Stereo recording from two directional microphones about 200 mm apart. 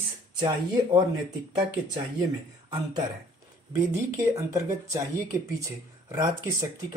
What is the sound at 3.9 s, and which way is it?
Speech, 15° right (ahead or behind).